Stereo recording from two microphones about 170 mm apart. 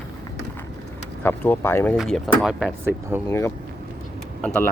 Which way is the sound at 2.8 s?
15° right (ahead or behind).